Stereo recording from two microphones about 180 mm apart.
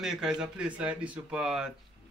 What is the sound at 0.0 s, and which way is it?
Speech, 5° right (ahead or behind).